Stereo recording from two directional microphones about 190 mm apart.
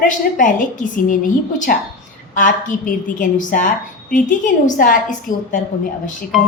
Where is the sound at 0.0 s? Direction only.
45° left (ahead or behind).